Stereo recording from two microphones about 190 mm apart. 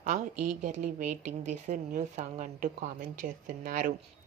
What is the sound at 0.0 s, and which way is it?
A woman's voice, 40° right (ahead or behind).